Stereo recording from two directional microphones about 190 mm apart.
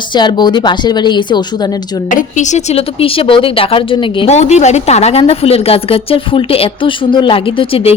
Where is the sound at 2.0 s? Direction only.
40° left (ahead or behind).